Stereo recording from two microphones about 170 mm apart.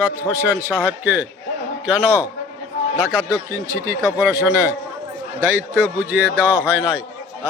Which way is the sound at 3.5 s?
20° right (ahead or behind).